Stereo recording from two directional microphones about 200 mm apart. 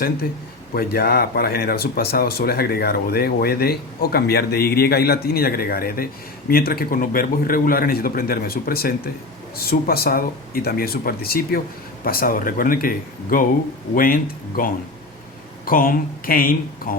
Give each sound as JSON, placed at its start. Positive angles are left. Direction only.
{"t": 0.7, "sound": "speech", "side_deg": 50}